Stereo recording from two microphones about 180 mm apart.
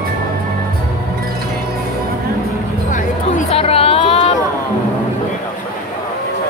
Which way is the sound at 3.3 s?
35° left (ahead or behind).